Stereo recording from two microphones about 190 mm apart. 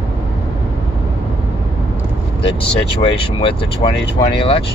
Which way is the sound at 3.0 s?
30° left (ahead or behind).